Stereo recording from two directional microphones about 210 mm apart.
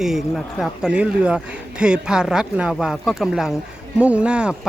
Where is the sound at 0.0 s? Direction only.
Centre (ahead or behind).